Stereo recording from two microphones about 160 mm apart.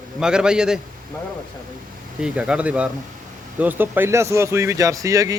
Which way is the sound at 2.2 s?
5° right (ahead or behind).